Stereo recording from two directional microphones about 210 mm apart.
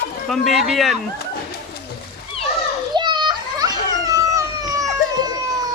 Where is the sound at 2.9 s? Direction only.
20° right (ahead or behind).